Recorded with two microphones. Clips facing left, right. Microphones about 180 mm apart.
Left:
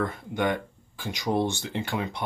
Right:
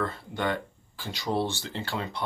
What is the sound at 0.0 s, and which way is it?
Speech, 15° left (ahead or behind).